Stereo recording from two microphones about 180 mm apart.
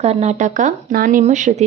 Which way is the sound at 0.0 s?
35° right (ahead or behind).